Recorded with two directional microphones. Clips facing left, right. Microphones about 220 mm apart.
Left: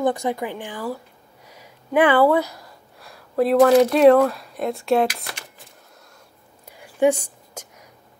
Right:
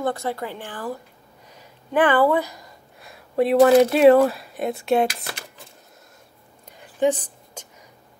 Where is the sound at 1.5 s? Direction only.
10° left (ahead or behind).